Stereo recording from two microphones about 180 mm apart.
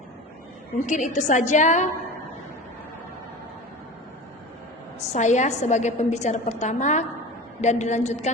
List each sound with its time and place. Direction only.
0.9 s a woman's voice: 45° left (ahead or behind)
4.9 s a woman's voice: 40° left (ahead or behind)